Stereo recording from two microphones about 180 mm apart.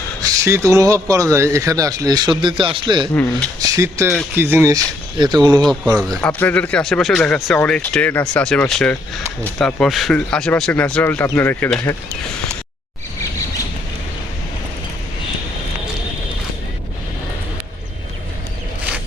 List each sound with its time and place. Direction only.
0.2 s a man's voice: 20° right (ahead or behind)
6.1 s speech: 5° left (ahead or behind)